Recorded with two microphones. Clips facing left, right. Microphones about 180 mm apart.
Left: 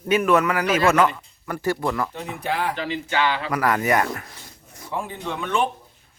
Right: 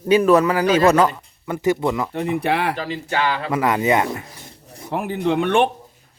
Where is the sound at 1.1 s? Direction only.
20° right (ahead or behind).